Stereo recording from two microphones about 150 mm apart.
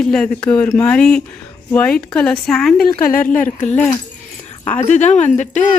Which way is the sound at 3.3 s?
60° left (ahead or behind).